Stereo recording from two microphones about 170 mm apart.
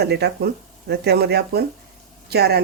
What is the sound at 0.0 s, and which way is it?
Speech, 75° right (ahead or behind).